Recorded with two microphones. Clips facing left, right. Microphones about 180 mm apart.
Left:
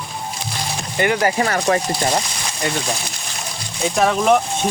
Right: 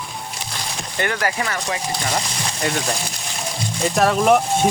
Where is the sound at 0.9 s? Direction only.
10° left (ahead or behind).